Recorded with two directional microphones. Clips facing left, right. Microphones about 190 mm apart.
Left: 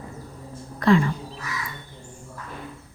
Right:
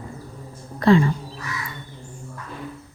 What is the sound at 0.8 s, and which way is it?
Speech, 30° right (ahead or behind).